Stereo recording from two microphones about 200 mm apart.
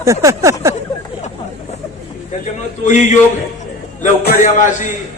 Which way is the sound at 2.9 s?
35° left (ahead or behind).